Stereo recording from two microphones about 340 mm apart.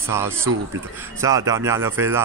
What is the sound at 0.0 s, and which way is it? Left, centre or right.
A man's voice, centre.